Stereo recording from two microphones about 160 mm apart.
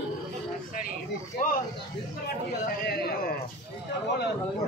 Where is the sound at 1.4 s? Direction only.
55° left (ahead or behind).